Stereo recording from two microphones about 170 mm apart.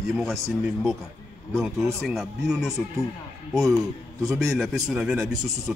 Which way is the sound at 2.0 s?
Centre (ahead or behind).